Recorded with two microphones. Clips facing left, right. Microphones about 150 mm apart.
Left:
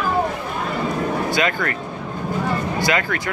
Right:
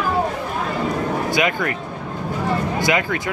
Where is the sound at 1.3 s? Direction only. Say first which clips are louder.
Right 1 dB; 15° right (ahead or behind).